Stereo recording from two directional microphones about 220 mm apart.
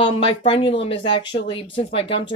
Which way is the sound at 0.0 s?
25° left (ahead or behind).